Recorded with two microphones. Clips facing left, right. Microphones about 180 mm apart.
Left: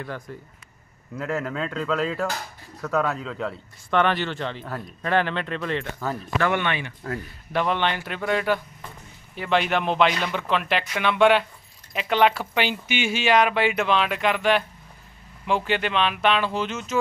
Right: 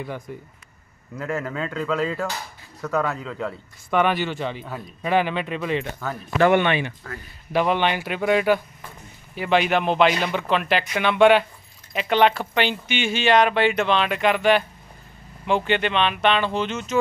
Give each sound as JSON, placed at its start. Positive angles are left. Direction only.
{"t": 0.0, "sound": "speech", "side_deg": -10}
{"t": 1.1, "sound": "speech", "side_deg": 0}
{"t": 6.4, "sound": "speech", "side_deg": -20}
{"t": 7.5, "sound": "speech", "side_deg": -10}